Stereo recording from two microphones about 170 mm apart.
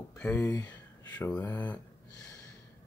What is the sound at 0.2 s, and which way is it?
Speech, 15° left (ahead or behind).